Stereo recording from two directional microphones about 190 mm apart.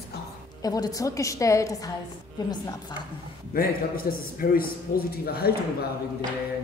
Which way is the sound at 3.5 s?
50° left (ahead or behind).